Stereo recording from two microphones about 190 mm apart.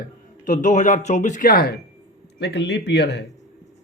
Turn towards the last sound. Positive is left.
turn(degrees=60)  # may be behind; listen again after turning